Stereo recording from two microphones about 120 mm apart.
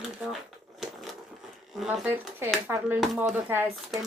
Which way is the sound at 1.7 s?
Centre (ahead or behind).